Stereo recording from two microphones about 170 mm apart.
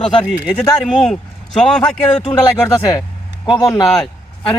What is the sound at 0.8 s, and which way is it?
Speech, 5° left (ahead or behind).